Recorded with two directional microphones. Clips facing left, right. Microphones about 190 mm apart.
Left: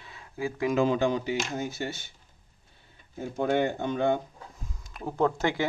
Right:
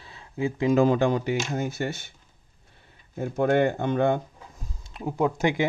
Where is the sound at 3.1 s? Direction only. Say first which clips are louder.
Right 4 dB; 60° right (ahead or behind).